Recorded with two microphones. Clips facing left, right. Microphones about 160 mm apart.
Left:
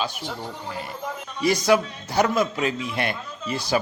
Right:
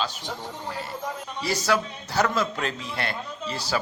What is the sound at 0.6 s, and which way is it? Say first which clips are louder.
A man's voice: even; 15° left (ahead or behind).